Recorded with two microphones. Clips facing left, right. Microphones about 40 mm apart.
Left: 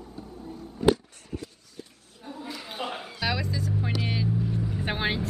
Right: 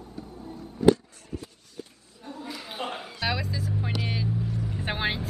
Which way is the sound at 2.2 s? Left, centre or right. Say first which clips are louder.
Even; centre.